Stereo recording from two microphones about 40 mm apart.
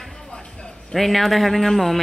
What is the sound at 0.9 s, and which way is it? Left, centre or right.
Speech, centre.